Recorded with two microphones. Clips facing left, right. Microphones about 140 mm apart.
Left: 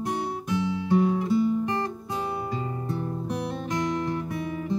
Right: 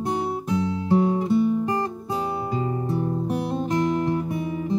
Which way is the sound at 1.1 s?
25° right (ahead or behind).